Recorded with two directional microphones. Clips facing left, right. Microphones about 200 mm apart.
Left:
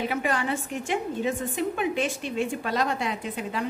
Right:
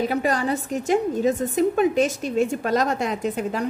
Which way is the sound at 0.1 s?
40° right (ahead or behind).